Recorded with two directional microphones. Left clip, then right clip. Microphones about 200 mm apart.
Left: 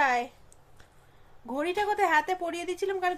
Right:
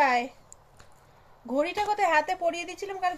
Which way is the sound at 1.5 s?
50° left (ahead or behind).